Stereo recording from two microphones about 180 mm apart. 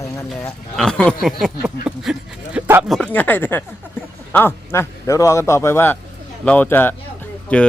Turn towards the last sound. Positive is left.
turn(degrees=10)  # may be behind; listen again after turning